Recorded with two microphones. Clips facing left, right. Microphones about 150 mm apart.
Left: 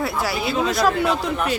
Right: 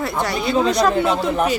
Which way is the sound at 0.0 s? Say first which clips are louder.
Right 2 dB; 5° left (ahead or behind).